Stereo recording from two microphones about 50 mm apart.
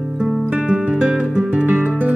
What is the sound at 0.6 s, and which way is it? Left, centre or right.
Music, right.